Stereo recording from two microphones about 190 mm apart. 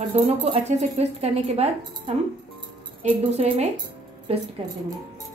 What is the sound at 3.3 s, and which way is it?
Speech, 35° right (ahead or behind).